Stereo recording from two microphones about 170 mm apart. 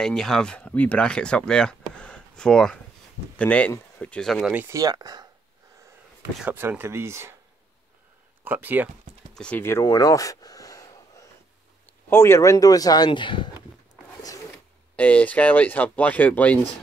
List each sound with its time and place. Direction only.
0.0 s speech: 5° left (ahead or behind)
4.6 s speech: 20° right (ahead or behind)
6.4 s speech: 10° right (ahead or behind)
8.5 s speech: 10° right (ahead or behind)
9.3 s a sound: 5° left (ahead or behind)
11.8 s speech: 15° left (ahead or behind); by 13.6 s 30° left (ahead or behind)
15.0 s speech: 10° left (ahead or behind)